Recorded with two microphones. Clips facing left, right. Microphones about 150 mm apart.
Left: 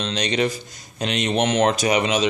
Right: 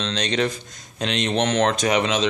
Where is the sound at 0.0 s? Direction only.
5° left (ahead or behind).